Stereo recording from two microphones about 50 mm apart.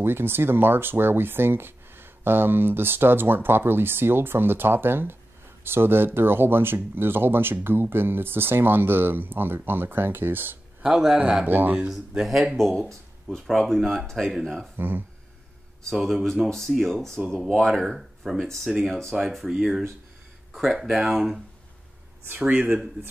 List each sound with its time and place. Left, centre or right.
0.0 s speech: right
10.8 s speech: centre
11.4 s speech: right
12.2 s speech: centre
12.8 s speech: centre
14.8 s speech: right
15.9 s speech: centre
17.6 s speech: centre
19.4 s speech: centre
22.4 s speech: right